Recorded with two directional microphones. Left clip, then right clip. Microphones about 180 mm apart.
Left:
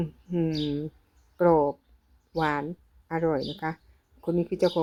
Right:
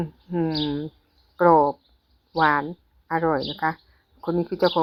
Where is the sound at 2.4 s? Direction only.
10° left (ahead or behind).